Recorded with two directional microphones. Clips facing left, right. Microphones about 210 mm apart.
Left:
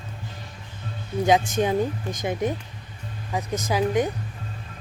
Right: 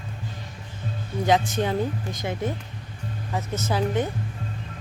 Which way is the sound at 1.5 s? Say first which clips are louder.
Left 2 dB; 15° left (ahead or behind).